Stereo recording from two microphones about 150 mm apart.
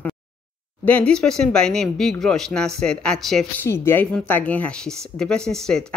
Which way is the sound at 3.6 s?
15° left (ahead or behind).